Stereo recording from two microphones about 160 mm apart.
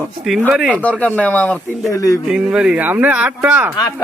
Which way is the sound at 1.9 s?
20° left (ahead or behind).